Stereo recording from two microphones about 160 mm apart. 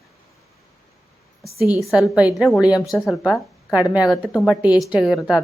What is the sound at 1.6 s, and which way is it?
Speech, 15° right (ahead or behind).